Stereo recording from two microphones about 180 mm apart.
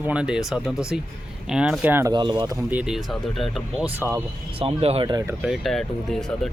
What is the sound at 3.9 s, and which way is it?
Speech, 15° right (ahead or behind).